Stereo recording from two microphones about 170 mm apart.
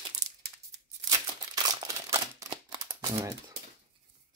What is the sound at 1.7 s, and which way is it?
Crumpling, 20° right (ahead or behind).